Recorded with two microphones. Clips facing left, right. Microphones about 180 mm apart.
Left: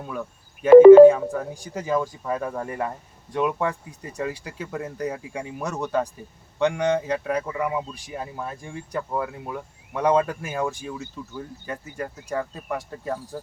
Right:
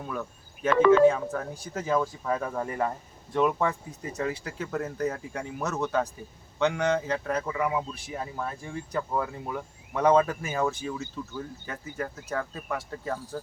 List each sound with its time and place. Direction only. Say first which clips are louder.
0.0 s speech: left 2 dB; 10° left (ahead or behind)
10.2 s speech: left 1 dB; centre (ahead or behind)